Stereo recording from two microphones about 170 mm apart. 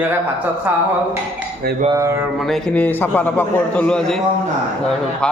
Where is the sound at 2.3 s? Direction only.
Centre (ahead or behind).